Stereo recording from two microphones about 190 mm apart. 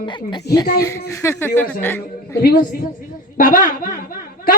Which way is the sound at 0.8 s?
15° left (ahead or behind).